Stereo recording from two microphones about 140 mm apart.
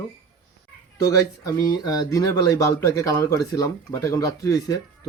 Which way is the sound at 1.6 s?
30° left (ahead or behind).